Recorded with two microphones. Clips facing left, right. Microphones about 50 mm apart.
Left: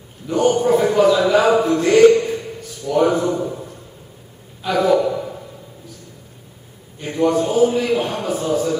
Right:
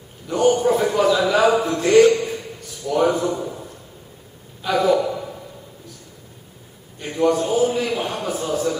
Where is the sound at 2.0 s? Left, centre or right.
Centre.